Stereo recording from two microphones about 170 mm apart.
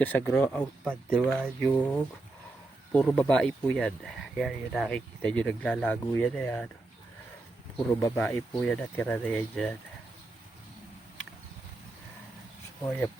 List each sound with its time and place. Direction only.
0.0 s speech: 10° left (ahead or behind)
7.8 s speech: 20° left (ahead or behind)